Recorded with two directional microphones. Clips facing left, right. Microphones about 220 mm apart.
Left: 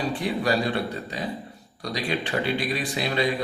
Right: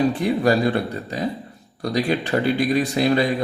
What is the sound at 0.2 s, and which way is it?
Speech, 45° right (ahead or behind).